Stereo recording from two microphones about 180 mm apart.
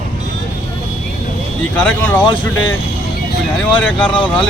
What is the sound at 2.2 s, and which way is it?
Speech, 25° left (ahead or behind).